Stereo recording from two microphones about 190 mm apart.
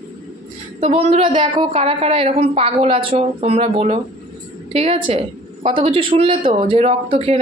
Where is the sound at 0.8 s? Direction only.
30° right (ahead or behind).